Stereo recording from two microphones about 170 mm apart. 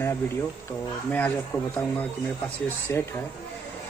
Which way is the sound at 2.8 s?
15° left (ahead or behind).